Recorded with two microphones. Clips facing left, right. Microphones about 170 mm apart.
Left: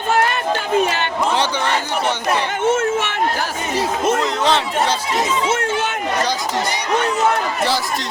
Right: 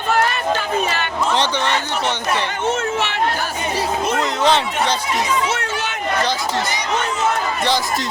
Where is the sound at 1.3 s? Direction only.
10° left (ahead or behind).